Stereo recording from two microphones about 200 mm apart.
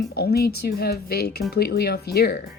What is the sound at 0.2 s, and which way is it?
Speech, 50° left (ahead or behind).